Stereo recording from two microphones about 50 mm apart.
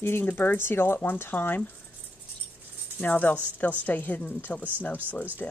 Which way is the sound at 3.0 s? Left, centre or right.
Left.